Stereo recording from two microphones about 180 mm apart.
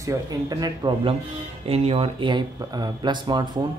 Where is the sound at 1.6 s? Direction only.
35° right (ahead or behind).